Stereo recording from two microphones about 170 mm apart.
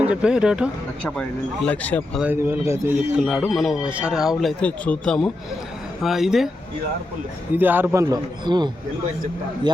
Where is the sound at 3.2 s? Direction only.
5° right (ahead or behind).